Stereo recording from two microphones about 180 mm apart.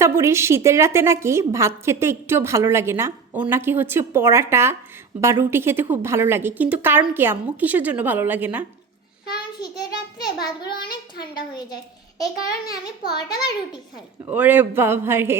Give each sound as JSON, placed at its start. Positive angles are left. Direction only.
{"t": 0.0, "sound": "a woman's voice", "side_deg": -15}
{"t": 9.3, "sound": "child singing", "side_deg": 25}
{"t": 10.2, "sound": "a woman's voice", "side_deg": 20}
{"t": 14.3, "sound": "a woman's voice", "side_deg": -10}